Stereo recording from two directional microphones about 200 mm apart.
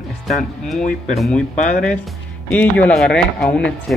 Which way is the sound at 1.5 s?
40° left (ahead or behind).